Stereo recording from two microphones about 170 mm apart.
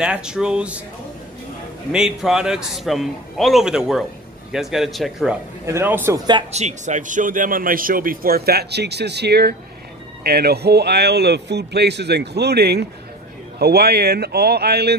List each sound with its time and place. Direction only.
0.0 s a man's voice: 5° right (ahead or behind)
1.9 s a man's voice: 5° right (ahead or behind)
5.7 s a man's voice: 15° right (ahead or behind)
6.5 s a man's voice: 45° right (ahead or behind); by 15.0 s 75° right (ahead or behind)